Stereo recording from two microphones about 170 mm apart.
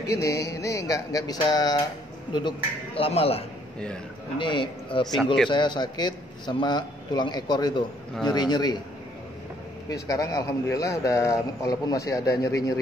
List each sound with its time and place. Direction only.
0.0 s a man's voice: 20° left (ahead or behind)
5.0 s a man's voice: 5° left (ahead or behind)
5.5 s a man's voice: 25° left (ahead or behind)
9.8 s a man's voice: 20° left (ahead or behind)